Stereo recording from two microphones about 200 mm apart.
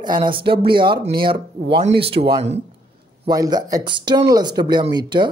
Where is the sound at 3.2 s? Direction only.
20° right (ahead or behind).